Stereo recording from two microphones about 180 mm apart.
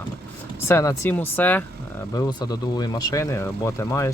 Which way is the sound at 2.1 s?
25° left (ahead or behind).